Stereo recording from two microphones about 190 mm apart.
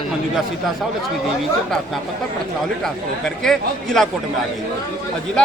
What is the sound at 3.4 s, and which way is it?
Speech, centre (ahead or behind).